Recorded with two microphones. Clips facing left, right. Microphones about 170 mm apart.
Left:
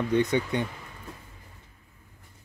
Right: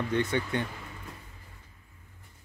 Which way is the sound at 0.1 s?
15° left (ahead or behind).